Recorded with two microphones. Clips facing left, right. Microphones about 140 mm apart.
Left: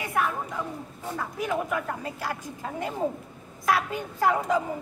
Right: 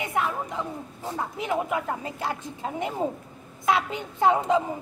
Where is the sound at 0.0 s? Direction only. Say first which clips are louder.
Even; 20° right (ahead or behind).